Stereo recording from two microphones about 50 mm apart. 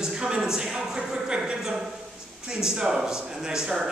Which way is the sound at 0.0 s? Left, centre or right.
Centre.